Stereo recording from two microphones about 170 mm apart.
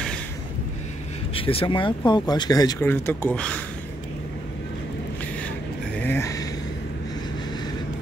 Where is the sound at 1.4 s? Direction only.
30° left (ahead or behind); by 3.6 s 5° left (ahead or behind).